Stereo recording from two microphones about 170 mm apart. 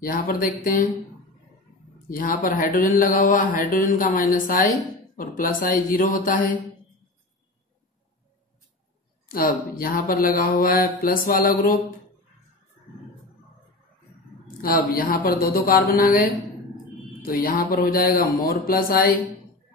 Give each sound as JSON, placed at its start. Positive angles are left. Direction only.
{"t": 0.0, "sound": "speech", "side_deg": 55}
{"t": 2.0, "sound": "speech", "side_deg": 55}
{"t": 9.3, "sound": "speech", "side_deg": 55}
{"t": 14.6, "sound": "speech", "side_deg": 60}